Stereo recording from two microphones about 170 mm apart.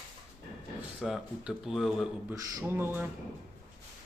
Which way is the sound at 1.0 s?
Centre (ahead or behind).